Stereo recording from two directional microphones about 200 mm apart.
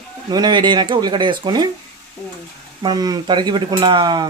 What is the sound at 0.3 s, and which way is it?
Speech, 20° right (ahead or behind).